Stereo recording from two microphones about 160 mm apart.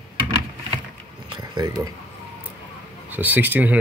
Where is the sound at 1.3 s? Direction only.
30° right (ahead or behind).